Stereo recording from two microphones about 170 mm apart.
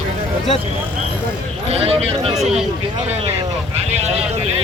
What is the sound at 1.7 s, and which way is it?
Speech, 35° right (ahead or behind).